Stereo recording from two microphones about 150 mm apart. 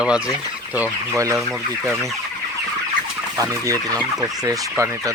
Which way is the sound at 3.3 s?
20° right (ahead or behind).